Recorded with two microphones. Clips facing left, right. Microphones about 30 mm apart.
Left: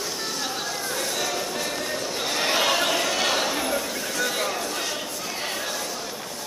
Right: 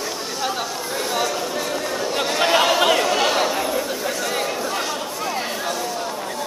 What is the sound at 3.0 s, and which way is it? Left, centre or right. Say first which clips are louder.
Chatter: right 5 dB; centre.